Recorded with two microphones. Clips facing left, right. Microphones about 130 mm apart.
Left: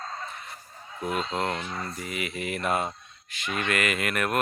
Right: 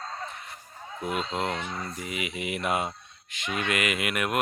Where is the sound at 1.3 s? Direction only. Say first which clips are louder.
Left 1 dB; 10° right (ahead or behind).